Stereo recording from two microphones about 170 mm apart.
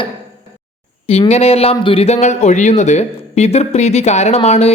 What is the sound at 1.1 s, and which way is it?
Speech, 40° left (ahead or behind).